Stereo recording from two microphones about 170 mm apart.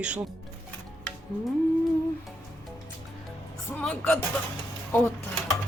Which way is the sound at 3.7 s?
10° left (ahead or behind).